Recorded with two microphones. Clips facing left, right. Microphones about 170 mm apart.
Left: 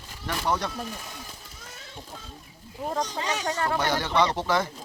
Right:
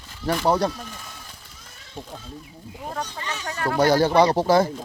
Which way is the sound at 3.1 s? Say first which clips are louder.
Left 3 dB; 90° left.